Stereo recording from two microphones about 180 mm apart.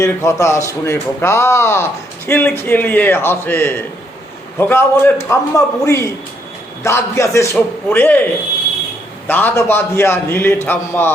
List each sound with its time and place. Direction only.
0.0 s a man's voice: 15° left (ahead or behind)
9.2 s a man's voice: 10° left (ahead or behind)